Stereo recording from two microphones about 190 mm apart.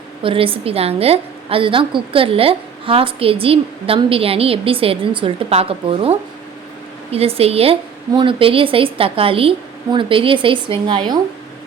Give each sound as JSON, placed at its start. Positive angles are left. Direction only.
{"t": 0.2, "sound": "a woman's voice", "side_deg": -30}